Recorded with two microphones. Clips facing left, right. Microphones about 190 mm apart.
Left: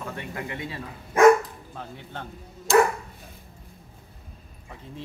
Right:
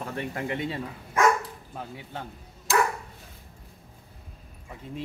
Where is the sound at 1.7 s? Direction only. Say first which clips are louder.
Right 1 dB; 5° right (ahead or behind).